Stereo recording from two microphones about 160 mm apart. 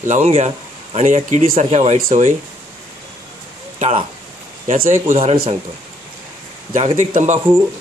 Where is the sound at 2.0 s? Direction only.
60° right (ahead or behind).